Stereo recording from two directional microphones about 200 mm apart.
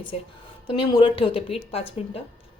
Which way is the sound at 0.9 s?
25° left (ahead or behind).